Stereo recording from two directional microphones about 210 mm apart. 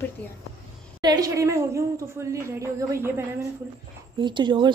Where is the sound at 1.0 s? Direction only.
20° right (ahead or behind).